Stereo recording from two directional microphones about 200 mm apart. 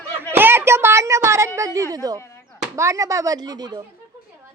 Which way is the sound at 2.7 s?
15° right (ahead or behind).